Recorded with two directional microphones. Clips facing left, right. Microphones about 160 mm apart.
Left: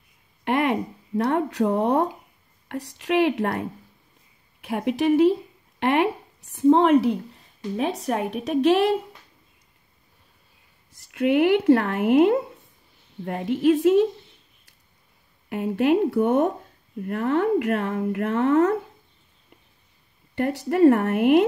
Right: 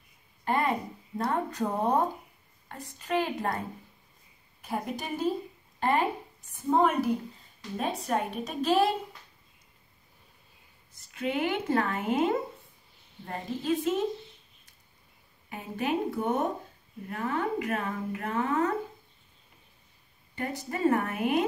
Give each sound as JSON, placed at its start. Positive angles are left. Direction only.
{"t": 0.5, "sound": "speech", "side_deg": 75}
{"t": 4.6, "sound": "a woman's voice", "side_deg": 70}
{"t": 11.0, "sound": "speech", "side_deg": 70}
{"t": 15.5, "sound": "speech", "side_deg": 70}
{"t": 20.3, "sound": "speech", "side_deg": 70}